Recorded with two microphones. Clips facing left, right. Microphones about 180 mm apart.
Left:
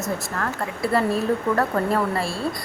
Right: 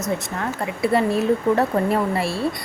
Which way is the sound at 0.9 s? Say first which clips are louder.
Right 2 dB; centre (ahead or behind).